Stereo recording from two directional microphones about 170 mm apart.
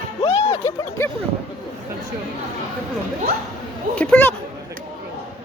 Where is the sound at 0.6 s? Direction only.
15° left (ahead or behind).